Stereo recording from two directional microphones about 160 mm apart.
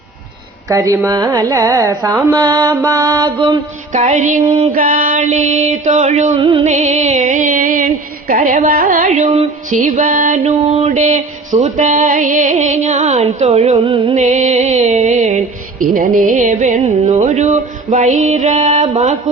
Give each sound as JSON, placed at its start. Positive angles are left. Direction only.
{"t": 0.7, "sound": "speech", "side_deg": -20}
{"t": 3.9, "sound": "speech", "side_deg": -50}
{"t": 4.7, "sound": "speech", "side_deg": -60}
{"t": 6.4, "sound": "music", "side_deg": -35}
{"t": 6.7, "sound": "music", "side_deg": -45}
{"t": 8.4, "sound": "speech", "side_deg": -55}
{"t": 14.2, "sound": "speech", "side_deg": -45}